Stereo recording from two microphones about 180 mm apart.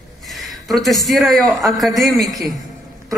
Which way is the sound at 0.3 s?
Centre (ahead or behind).